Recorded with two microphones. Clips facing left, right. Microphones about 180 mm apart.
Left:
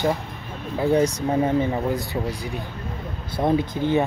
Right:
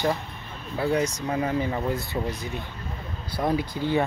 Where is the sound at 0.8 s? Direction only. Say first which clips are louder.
Left 5 dB; 30° left (ahead or behind); by 2.6 s 15° left (ahead or behind).